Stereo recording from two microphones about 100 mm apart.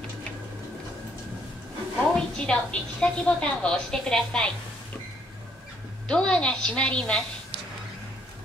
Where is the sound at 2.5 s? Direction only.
10° left (ahead or behind).